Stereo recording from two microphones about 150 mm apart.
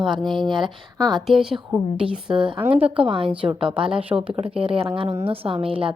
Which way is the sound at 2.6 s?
10° right (ahead or behind).